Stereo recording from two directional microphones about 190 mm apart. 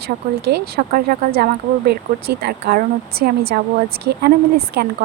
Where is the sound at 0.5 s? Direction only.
50° right (ahead or behind).